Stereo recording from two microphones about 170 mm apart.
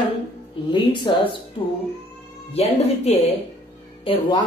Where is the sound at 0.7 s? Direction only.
25° left (ahead or behind).